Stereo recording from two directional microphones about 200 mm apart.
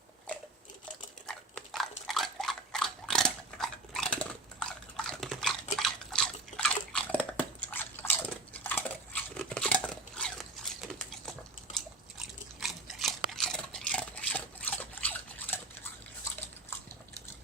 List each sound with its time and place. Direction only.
1.3 s dog: 5° left (ahead or behind)
5.7 s drip: centre (ahead or behind)